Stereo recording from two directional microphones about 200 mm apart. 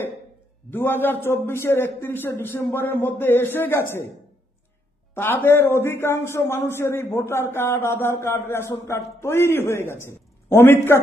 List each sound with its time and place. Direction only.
0.7 s a man's voice: 10° left (ahead or behind)
5.1 s a man's voice: 10° left (ahead or behind)